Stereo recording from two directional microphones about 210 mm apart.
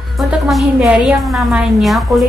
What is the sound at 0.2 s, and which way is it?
Speech, centre (ahead or behind).